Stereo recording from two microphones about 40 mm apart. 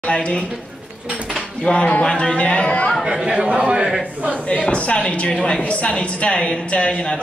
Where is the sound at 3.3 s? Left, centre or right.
Right.